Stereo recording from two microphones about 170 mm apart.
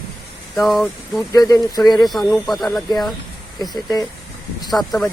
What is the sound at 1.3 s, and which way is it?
Speech, 20° left (ahead or behind).